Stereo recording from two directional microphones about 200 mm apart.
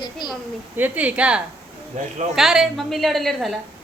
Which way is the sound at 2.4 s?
Centre (ahead or behind).